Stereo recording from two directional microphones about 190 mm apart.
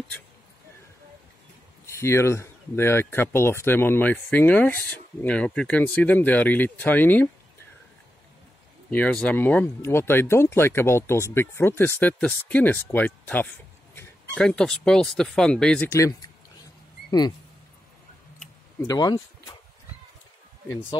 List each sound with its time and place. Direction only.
1.9 s speech: 15° left (ahead or behind)
8.9 s speech: 5° left (ahead or behind)
18.9 s speech: 20° left (ahead or behind)
20.6 s speech: 15° left (ahead or behind)